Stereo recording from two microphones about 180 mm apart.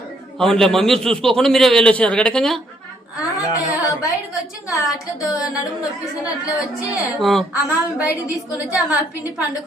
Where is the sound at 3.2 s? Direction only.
20° left (ahead or behind).